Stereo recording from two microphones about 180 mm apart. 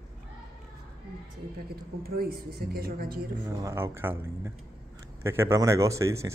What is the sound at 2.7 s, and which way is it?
Speech, 55° right (ahead or behind).